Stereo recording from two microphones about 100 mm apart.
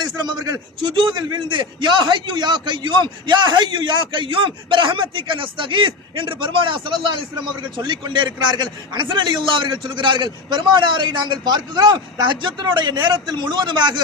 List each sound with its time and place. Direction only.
0.0 s a man's voice: 40° right (ahead or behind)